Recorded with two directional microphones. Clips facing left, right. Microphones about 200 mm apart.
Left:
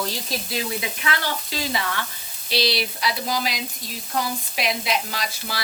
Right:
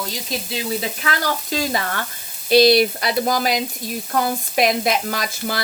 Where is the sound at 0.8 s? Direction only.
40° right (ahead or behind).